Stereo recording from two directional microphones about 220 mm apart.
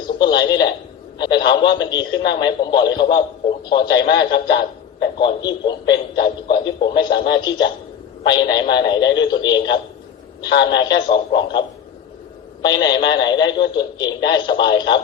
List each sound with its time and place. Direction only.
0.2 s a man's voice: 20° left (ahead or behind)
12.6 s a man's voice: 20° left (ahead or behind)